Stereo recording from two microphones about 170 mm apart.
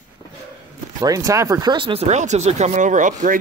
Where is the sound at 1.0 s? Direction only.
20° right (ahead or behind); by 3.4 s 50° right (ahead or behind).